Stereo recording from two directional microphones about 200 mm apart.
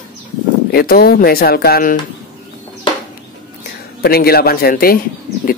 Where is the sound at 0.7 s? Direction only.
50° left (ahead or behind).